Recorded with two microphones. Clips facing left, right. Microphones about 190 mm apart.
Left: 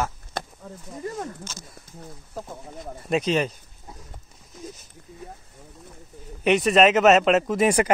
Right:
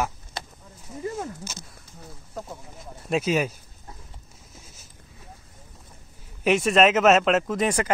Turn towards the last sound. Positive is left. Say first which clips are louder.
# left 4 dB
turn(degrees=15)  # may be behind; listen again after turning